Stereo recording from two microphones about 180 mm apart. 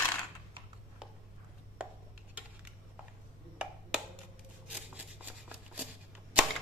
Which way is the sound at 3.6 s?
5° right (ahead or behind).